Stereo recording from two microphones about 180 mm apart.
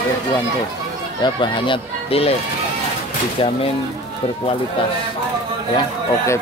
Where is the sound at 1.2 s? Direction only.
25° left (ahead or behind).